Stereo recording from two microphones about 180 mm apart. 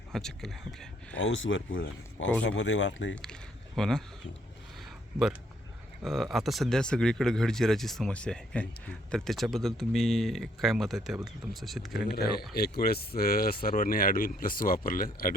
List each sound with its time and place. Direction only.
0.1 s speech: centre (ahead or behind)
1.1 s speech: 90° left
3.8 s speech: 5° left (ahead or behind)
4.8 s a sound: centre (ahead or behind)
6.0 s speech: centre (ahead or behind)
12.1 s speech: 60° left (ahead or behind)